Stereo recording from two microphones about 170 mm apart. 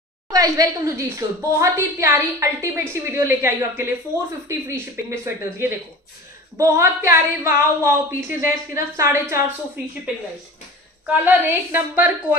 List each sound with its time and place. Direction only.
0.3 s a woman's voice: 20° right (ahead or behind)
11.1 s a woman's voice: 10° right (ahead or behind)